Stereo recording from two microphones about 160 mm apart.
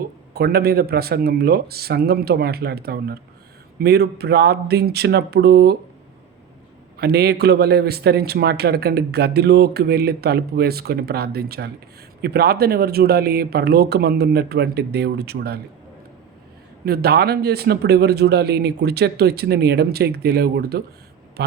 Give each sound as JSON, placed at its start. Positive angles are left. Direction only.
{"t": 0.3, "sound": "speech", "side_deg": -75}
{"t": 3.8, "sound": "speech", "side_deg": -90}
{"t": 7.0, "sound": "a man's voice", "side_deg": -90}
{"t": 16.8, "sound": "speech", "side_deg": -75}